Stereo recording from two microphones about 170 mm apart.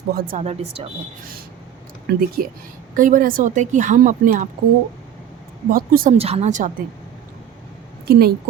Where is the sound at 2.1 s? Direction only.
60° right (ahead or behind).